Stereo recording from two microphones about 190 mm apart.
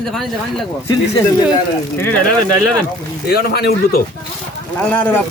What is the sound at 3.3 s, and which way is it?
Speech, 55° left (ahead or behind).